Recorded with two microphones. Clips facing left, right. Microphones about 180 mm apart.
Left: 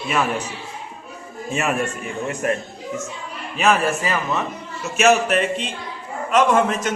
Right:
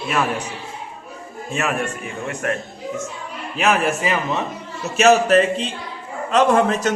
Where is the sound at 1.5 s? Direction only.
Centre (ahead or behind).